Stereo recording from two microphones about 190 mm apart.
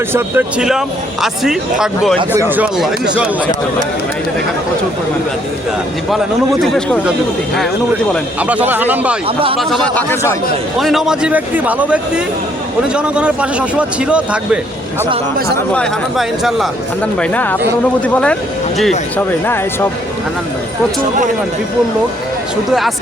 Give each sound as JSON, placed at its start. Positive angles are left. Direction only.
{"t": 0.1, "sound": "speech", "side_deg": -5}
{"t": 6.6, "sound": "speech", "side_deg": 5}
{"t": 8.4, "sound": "speech", "side_deg": -5}
{"t": 9.2, "sound": "speech", "side_deg": -30}
{"t": 9.6, "sound": "speech", "side_deg": 0}
{"t": 10.8, "sound": "speech", "side_deg": 0}
{"t": 15.7, "sound": "speech", "side_deg": 0}
{"t": 17.2, "sound": "speech", "side_deg": 10}